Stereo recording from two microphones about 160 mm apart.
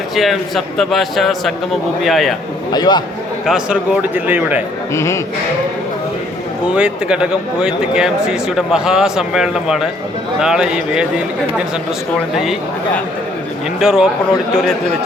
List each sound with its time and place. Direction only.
0.2 s speech: centre (ahead or behind)
2.7 s a man's voice: 25° left (ahead or behind)
3.4 s speech: 5° right (ahead or behind)
4.9 s a man's voice: 20° left (ahead or behind)
6.7 s speech: 5° right (ahead or behind)
13.7 s speech: 5° right (ahead or behind)